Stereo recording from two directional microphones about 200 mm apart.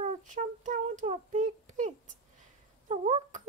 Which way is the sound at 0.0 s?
40° right (ahead or behind).